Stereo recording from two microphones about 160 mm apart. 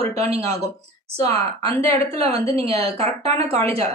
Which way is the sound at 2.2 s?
40° right (ahead or behind).